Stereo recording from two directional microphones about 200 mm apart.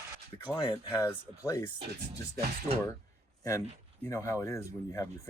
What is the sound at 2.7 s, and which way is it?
Speech, 30° right (ahead or behind).